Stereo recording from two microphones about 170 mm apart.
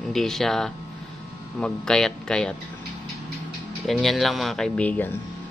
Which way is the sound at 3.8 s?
Centre (ahead or behind).